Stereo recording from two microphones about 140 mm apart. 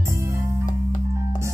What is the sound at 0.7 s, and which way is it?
Music, 60° left (ahead or behind).